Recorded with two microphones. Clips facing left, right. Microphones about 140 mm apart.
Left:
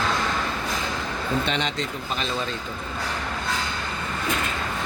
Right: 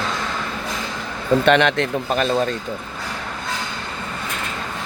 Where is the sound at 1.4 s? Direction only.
65° right (ahead or behind); by 2.4 s 50° right (ahead or behind).